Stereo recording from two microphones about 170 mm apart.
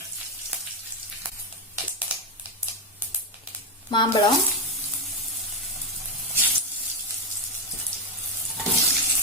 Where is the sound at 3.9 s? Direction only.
25° left (ahead or behind).